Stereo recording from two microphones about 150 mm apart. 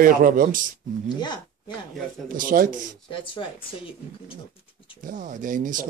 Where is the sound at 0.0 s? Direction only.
70° right (ahead or behind).